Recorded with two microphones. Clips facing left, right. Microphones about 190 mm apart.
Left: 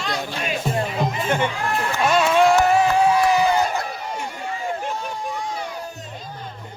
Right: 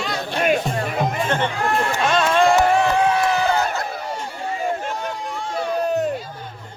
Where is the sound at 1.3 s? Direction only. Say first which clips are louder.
Even; 10° left (ahead or behind).